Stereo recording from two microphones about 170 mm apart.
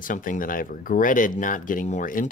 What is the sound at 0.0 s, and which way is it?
Speech, 50° left (ahead or behind).